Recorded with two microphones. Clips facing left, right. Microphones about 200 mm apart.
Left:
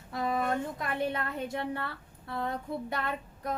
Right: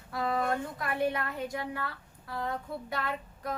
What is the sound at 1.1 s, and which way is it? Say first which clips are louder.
Speech: left 1 dB; 25° left (ahead or behind).